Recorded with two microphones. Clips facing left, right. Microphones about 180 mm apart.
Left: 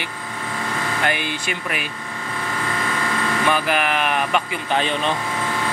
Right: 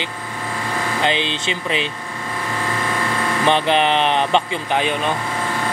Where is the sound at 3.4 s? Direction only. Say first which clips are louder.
Right 5 dB; 25° right (ahead or behind).